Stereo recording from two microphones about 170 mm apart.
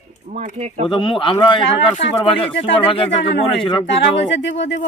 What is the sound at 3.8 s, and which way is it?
Speech, 90° left.